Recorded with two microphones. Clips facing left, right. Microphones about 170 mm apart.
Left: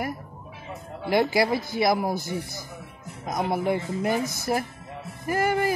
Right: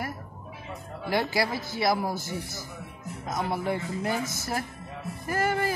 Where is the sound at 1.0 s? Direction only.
15° left (ahead or behind).